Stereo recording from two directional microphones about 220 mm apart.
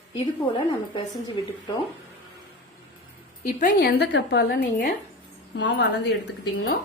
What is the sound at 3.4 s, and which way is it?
A woman's voice, 40° left (ahead or behind).